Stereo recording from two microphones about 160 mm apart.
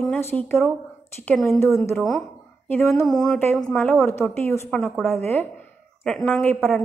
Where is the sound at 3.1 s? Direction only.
10° left (ahead or behind).